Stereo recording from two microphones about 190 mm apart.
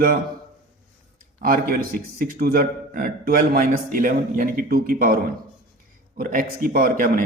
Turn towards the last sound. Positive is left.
turn(degrees=-45)  # may be behind; listen again after turning